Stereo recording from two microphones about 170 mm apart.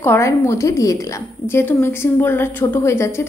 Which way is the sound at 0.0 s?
15° left (ahead or behind).